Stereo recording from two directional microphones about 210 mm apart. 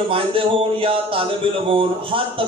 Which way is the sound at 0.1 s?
25° right (ahead or behind).